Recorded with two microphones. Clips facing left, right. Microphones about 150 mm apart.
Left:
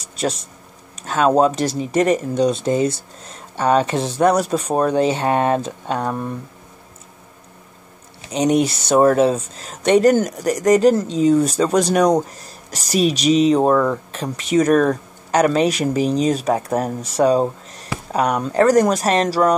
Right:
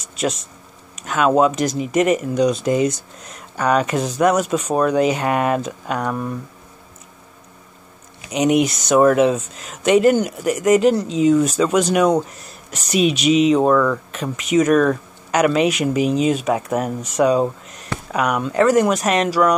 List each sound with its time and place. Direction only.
0.2 s speech: 35° left (ahead or behind)
8.2 s speech: 30° left (ahead or behind)